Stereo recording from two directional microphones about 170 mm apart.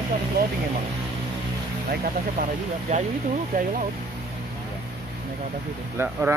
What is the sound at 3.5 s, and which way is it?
Speech, 55° right (ahead or behind).